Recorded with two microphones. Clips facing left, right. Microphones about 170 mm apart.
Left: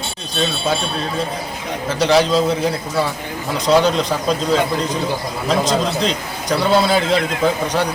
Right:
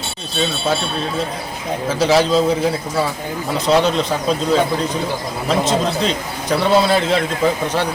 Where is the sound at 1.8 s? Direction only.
5° right (ahead or behind).